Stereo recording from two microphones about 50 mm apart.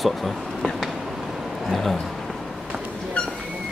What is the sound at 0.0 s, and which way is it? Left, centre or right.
Speech, centre.